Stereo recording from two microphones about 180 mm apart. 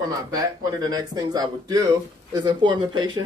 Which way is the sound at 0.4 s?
20° right (ahead or behind).